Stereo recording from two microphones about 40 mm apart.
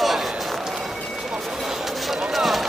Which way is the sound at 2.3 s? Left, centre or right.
Centre.